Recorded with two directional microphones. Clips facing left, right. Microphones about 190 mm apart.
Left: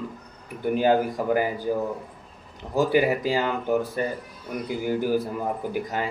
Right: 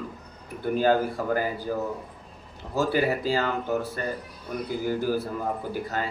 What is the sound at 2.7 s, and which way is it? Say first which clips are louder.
A man's voice: left 3 dB; 15° left (ahead or behind).